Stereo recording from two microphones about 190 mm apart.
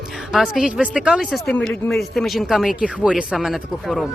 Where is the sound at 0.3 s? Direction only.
Centre (ahead or behind).